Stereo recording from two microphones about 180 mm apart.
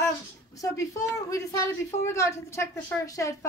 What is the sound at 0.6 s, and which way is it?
A woman's voice, 20° left (ahead or behind).